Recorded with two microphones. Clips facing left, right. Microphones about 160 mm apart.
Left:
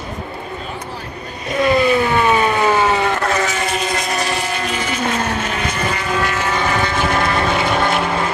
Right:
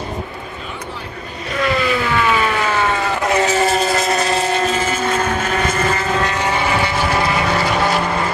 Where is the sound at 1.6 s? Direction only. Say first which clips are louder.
Left 4 dB; 20° left (ahead or behind).